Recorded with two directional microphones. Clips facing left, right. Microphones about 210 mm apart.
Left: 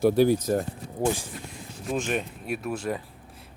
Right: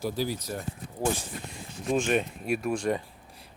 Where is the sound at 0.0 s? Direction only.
55° left (ahead or behind).